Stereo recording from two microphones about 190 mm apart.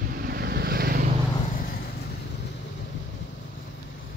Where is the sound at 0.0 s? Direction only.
50° right (ahead or behind).